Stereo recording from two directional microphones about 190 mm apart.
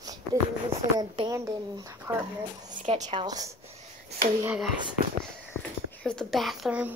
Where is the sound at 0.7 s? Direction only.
20° right (ahead or behind).